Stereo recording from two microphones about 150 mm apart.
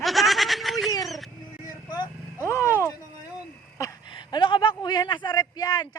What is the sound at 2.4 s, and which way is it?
Speech, 20° left (ahead or behind).